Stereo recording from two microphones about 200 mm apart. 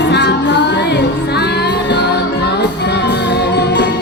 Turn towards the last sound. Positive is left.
turn(degrees=55)  # may be behind; listen again after turning